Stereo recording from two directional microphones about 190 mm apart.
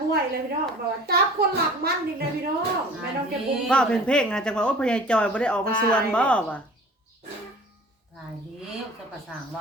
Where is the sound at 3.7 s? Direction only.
5° left (ahead or behind).